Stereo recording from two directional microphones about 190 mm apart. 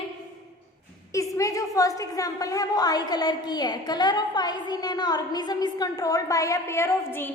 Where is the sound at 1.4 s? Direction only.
15° left (ahead or behind).